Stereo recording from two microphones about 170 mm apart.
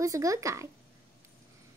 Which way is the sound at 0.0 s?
20° right (ahead or behind).